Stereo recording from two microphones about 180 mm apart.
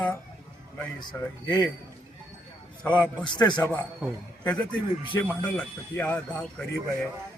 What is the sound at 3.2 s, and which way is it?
Speech, 25° left (ahead or behind).